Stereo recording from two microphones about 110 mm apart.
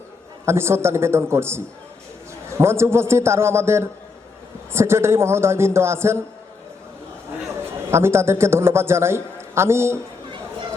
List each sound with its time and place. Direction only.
0.4 s a man's voice: 25° right (ahead or behind)
7.9 s a man's voice: 25° right (ahead or behind)